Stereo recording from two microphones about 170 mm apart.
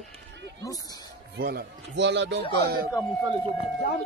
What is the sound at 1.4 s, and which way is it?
A man's voice, 80° right.